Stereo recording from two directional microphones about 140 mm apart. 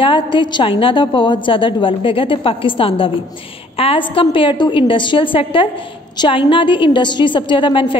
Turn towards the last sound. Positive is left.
turn(degrees=35)  # may be behind; listen again after turning